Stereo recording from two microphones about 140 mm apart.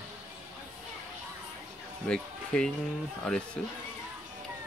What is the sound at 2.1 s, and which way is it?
Speech, 5° left (ahead or behind).